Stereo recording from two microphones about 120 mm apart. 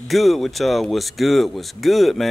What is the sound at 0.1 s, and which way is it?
Speech, centre (ahead or behind).